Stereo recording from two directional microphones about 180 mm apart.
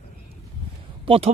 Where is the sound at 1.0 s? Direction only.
30° right (ahead or behind).